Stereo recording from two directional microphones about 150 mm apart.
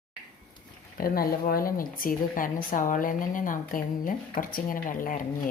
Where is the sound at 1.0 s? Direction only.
75° left (ahead or behind).